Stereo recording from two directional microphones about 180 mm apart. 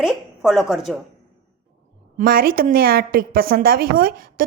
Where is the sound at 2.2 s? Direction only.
55° right (ahead or behind).